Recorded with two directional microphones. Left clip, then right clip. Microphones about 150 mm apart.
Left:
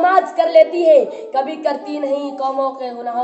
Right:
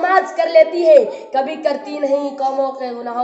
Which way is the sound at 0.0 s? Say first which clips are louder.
Left 1 dB; 10° left (ahead or behind).